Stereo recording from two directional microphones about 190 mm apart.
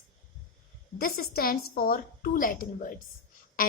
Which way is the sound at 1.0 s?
55° left (ahead or behind).